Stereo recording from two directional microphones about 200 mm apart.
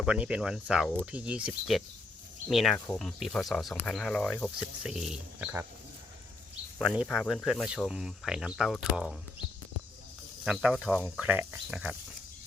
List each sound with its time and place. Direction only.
0.0 s speech: 5° right (ahead or behind)
6.7 s speech: 5° right (ahead or behind)
10.4 s speech: centre (ahead or behind)